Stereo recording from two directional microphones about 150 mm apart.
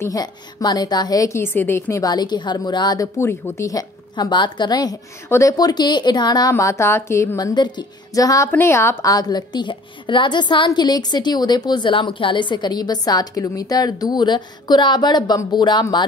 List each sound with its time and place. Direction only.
0.0 s a woman's voice: 25° left (ahead or behind)